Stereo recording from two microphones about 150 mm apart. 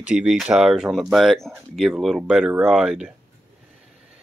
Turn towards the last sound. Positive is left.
turn(degrees=-5)  # may be behind; listen again after turning